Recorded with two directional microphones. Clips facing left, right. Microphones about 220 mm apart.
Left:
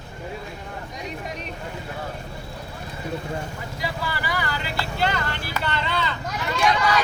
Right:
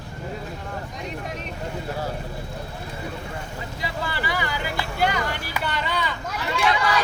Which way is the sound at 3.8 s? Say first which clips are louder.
Even; 20° right (ahead or behind).